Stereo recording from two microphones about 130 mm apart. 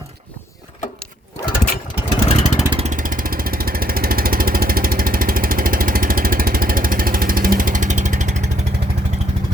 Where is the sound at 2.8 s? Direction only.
80° right; by 8.6 s 65° right (ahead or behind).